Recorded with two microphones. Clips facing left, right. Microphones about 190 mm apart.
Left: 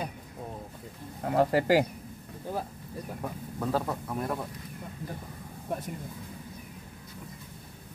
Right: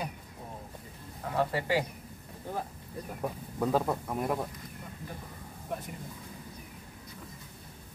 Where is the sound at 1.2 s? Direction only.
40° left (ahead or behind).